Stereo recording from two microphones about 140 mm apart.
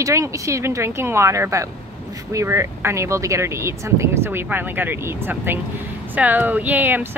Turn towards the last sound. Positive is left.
turn(degrees=-15)  # may be behind; listen again after turning